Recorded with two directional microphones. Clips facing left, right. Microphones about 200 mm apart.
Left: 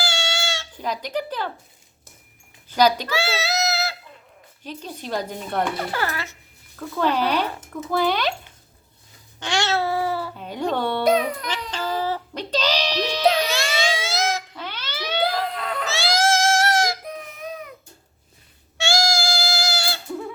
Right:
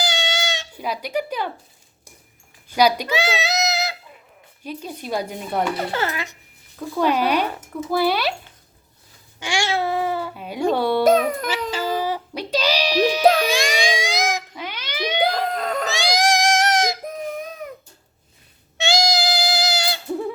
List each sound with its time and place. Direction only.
0.0 s music: 20° right (ahead or behind)
2.6 s goat: 10° right (ahead or behind)
4.6 s speech: 10° right (ahead or behind)
5.9 s speech: 20° right (ahead or behind)
9.4 s babbling: 10° right (ahead or behind)
10.3 s speech: 10° right (ahead or behind)
11.0 s baby cry: 45° right (ahead or behind)
11.7 s music: 10° right (ahead or behind)
13.4 s a sound: 15° right (ahead or behind)
15.3 s baby cry: 45° right (ahead or behind)
15.9 s baby cry: 15° right (ahead or behind)
17.1 s a sound: 45° right (ahead or behind)
18.8 s music: 20° right (ahead or behind)